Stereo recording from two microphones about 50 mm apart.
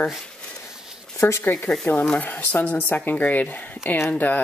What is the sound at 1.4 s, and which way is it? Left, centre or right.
Speech, left.